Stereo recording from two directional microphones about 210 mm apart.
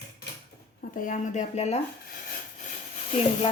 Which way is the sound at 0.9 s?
40° left (ahead or behind).